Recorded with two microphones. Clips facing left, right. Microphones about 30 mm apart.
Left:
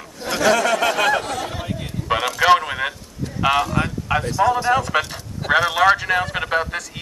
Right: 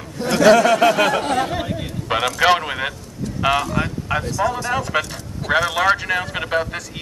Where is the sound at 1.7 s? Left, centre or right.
Centre.